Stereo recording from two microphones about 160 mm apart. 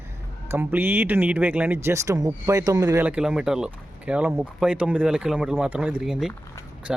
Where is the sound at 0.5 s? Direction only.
15° right (ahead or behind).